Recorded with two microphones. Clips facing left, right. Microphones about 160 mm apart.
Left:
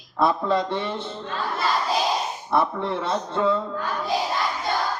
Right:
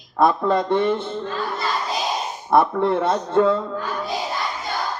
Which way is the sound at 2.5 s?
50° right (ahead or behind).